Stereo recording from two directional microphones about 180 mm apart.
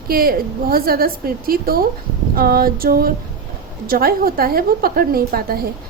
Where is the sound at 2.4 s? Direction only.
55° right (ahead or behind).